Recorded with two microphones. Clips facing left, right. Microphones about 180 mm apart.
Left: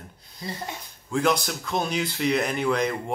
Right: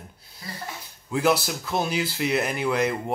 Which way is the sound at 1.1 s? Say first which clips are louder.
Right 1 dB; 5° right (ahead or behind).